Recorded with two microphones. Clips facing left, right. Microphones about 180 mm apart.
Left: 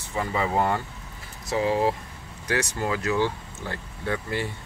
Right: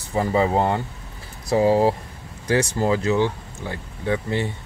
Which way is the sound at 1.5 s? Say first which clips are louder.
Right 6 dB; 35° right (ahead or behind).